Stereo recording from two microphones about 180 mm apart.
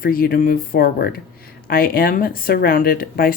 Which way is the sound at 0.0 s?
55° left (ahead or behind).